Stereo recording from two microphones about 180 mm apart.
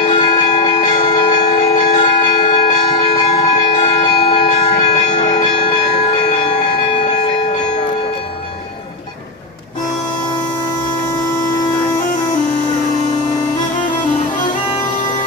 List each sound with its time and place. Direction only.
0.0 s music: 35° left (ahead or behind)
5.4 s church bell: 30° left (ahead or behind)